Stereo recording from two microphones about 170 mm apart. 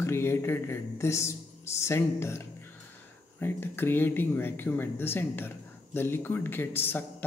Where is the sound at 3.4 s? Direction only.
10° left (ahead or behind).